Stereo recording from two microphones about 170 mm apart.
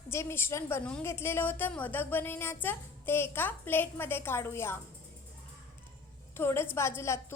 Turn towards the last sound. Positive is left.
turn(degrees=15)  # may be behind; listen again after turning